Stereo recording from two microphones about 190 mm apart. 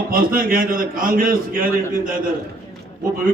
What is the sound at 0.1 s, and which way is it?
A man's voice, 50° right (ahead or behind).